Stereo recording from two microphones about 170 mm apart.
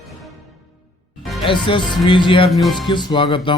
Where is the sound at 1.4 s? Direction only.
30° left (ahead or behind).